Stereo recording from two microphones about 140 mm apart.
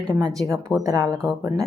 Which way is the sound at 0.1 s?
30° right (ahead or behind).